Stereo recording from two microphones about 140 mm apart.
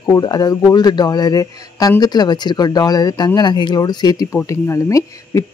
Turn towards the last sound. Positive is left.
turn(degrees=20)  # may be behind; listen again after turning